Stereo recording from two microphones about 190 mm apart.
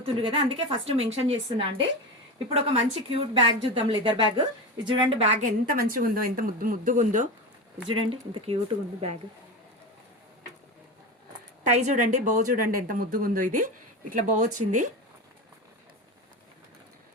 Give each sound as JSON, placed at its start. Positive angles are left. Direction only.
{"t": 0.0, "sound": "a woman's voice", "side_deg": -30}
{"t": 7.9, "sound": "a woman's voice", "side_deg": -30}
{"t": 11.6, "sound": "a woman's voice", "side_deg": -40}